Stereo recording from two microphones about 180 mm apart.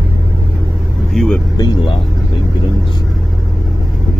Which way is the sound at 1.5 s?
25° left (ahead or behind).